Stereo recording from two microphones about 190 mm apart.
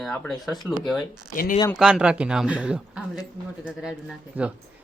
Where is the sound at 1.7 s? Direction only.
5° right (ahead or behind).